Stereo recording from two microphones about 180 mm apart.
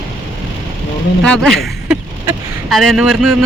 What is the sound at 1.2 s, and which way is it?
Speech, 5° left (ahead or behind).